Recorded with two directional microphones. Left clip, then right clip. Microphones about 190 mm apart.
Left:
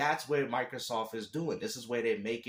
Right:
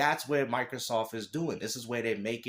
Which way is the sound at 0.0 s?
45° right (ahead or behind).